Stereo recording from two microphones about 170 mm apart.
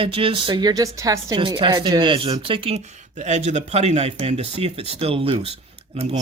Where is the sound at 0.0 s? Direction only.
30° right (ahead or behind).